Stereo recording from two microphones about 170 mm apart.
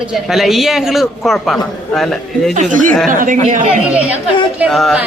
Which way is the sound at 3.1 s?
50° right (ahead or behind).